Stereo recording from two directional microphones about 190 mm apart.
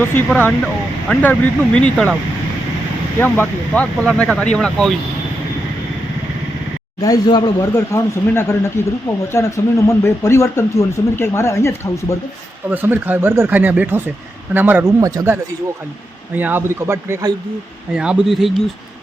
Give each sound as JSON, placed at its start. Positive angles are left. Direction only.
{"t": 0.0, "sound": "speech", "side_deg": 10}
{"t": 3.2, "sound": "speech", "side_deg": 10}
{"t": 7.0, "sound": "speech", "side_deg": 20}
{"t": 12.7, "sound": "speech", "side_deg": -10}
{"t": 17.9, "sound": "speech", "side_deg": -5}